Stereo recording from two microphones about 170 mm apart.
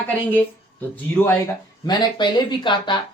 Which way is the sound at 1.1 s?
10° left (ahead or behind).